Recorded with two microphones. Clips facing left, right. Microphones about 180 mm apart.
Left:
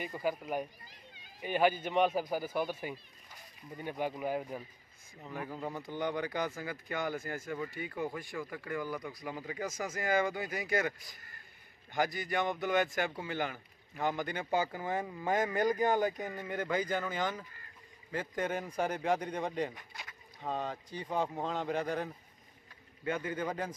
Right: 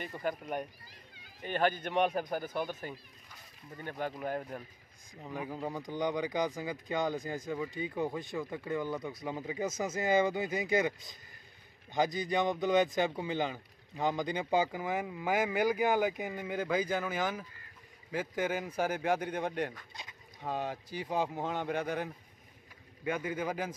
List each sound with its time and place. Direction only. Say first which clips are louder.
0.2 s a man's voice: left 1 dB; 5° left (ahead or behind)
5.1 s a man's voice: right 2 dB; 15° right (ahead or behind)
20.0 s boat: even; 20° right (ahead or behind)
20.4 s a man's voice: right 1 dB; 5° right (ahead or behind)